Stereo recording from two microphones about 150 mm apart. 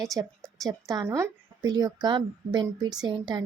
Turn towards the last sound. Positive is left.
turn(degrees=-25)  # may be behind; listen again after turning